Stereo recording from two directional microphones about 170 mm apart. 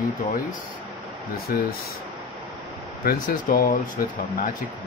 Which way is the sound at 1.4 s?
65° left (ahead or behind).